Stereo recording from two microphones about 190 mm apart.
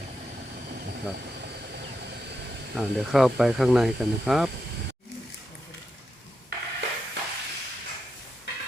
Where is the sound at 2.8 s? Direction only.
Centre (ahead or behind).